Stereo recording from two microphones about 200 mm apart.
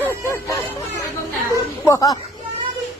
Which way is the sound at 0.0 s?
15° left (ahead or behind).